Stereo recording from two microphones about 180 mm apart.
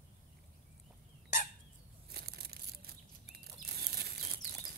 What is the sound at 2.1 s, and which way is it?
Bird flight, 60° right (ahead or behind).